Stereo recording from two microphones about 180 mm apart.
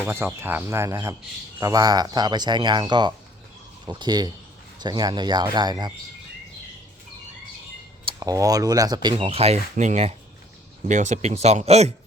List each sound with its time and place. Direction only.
0.0 s speech: 10° right (ahead or behind)
8.0 s speech: 20° right (ahead or behind)
9.2 s speech: 35° right (ahead or behind)